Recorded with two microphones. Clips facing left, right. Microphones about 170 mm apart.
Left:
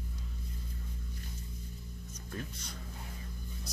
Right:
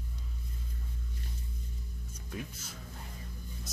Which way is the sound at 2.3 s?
5° right (ahead or behind).